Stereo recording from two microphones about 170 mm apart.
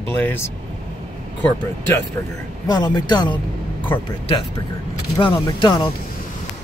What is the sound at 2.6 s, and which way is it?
Speech, 25° left (ahead or behind).